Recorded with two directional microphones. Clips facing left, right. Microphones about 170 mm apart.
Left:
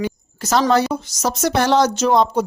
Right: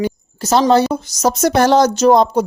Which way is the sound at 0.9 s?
40° right (ahead or behind).